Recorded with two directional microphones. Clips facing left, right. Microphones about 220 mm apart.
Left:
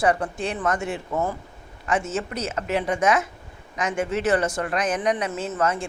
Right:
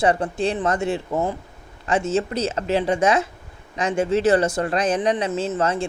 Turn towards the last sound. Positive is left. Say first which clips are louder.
# right 3 dB
turn(degrees=-30)  # may be behind; listen again after turning